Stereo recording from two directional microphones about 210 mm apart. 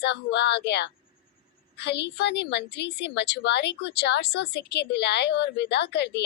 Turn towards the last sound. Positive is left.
turn(degrees=55)  # may be behind; listen again after turning